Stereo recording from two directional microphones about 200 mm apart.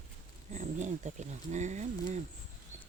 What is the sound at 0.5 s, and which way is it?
Speech, 35° right (ahead or behind).